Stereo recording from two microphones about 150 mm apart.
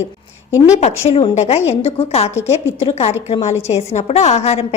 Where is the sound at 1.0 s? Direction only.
40° left (ahead or behind).